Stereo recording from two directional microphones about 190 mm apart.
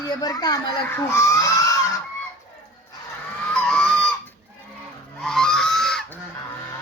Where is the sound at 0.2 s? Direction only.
20° left (ahead or behind).